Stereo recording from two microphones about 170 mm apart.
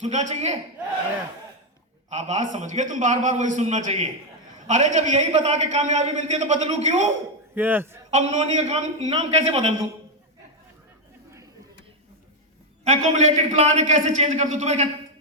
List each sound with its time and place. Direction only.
0.0 s a man's voice: 45° right (ahead or behind)
2.0 s a man's voice: 40° right (ahead or behind)
7.5 s a man's voice: 10° right (ahead or behind)
8.1 s a man's voice: 40° right (ahead or behind)
12.8 s a man's voice: 45° right (ahead or behind)